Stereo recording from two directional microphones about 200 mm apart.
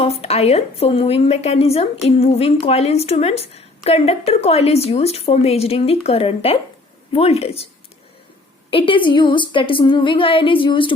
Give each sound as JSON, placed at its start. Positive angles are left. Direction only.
{"t": 0.0, "sound": "a woman's voice", "side_deg": 30}
{"t": 8.7, "sound": "a woman's voice", "side_deg": 25}